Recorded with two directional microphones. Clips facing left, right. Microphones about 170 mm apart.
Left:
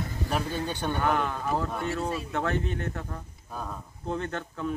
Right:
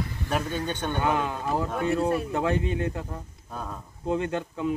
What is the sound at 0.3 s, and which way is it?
Speech, 5° left (ahead or behind).